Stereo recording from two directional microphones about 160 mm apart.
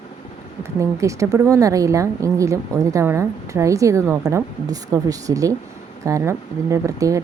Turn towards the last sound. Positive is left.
turn(degrees=-20)  # may be behind; listen again after turning